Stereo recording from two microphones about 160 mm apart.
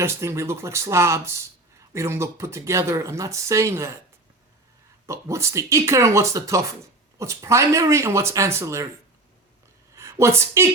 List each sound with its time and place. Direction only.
0.0 s speech: 15° right (ahead or behind)
5.0 s speech: 20° right (ahead or behind)
9.9 s a woman's voice: 20° right (ahead or behind)